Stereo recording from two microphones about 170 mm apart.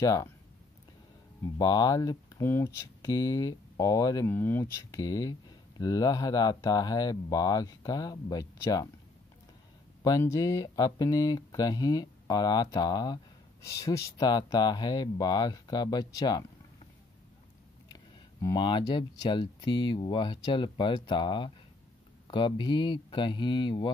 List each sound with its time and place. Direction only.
0.0 s speech: 20° left (ahead or behind)
1.6 s speech: 25° left (ahead or behind)
10.0 s speech: 20° left (ahead or behind)
18.4 s speech: 25° left (ahead or behind)